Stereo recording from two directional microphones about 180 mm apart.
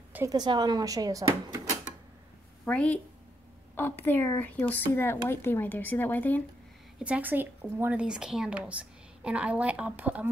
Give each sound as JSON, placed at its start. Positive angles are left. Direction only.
{"t": 0.1, "sound": "speech", "side_deg": -20}
{"t": 2.6, "sound": "speech", "side_deg": 5}
{"t": 7.0, "sound": "speech", "side_deg": -10}